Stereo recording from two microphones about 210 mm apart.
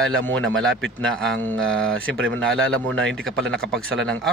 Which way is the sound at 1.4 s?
5° left (ahead or behind).